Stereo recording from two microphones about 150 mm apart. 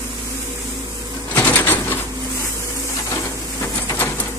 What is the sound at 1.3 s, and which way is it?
Bird, 10° left (ahead or behind).